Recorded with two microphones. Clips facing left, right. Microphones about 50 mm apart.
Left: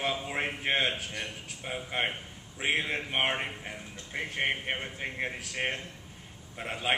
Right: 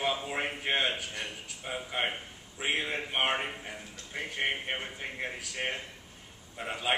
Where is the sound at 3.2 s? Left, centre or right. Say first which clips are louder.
Even; centre.